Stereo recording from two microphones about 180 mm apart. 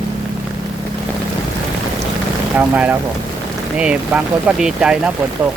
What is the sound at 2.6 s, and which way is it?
Speech, 10° right (ahead or behind).